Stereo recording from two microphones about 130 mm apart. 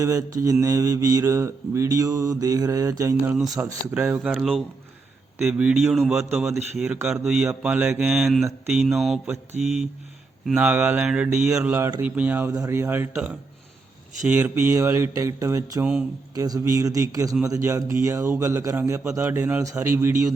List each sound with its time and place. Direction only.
0.0 s speech: 25° right (ahead or behind)
4.3 s speech: centre (ahead or behind)
9.2 s speech: 10° right (ahead or behind)
12.4 s speech: 30° right (ahead or behind)
15.8 s speech: 5° right (ahead or behind)
16.3 s speech: 25° right (ahead or behind)